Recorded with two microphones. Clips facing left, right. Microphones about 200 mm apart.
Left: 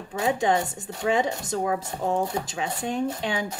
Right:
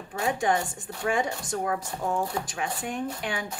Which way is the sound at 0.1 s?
20° left (ahead or behind).